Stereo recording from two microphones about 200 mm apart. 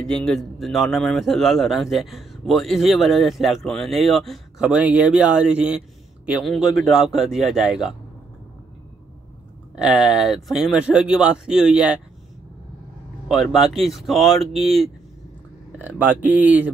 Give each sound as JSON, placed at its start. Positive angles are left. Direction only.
{"t": 0.0, "sound": "speech", "side_deg": 0}
{"t": 9.8, "sound": "speech", "side_deg": 0}
{"t": 13.3, "sound": "speech", "side_deg": 0}